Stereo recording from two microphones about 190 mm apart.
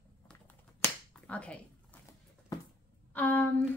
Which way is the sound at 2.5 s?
20° left (ahead or behind).